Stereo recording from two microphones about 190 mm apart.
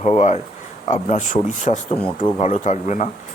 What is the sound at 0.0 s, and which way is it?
Speech, 40° left (ahead or behind).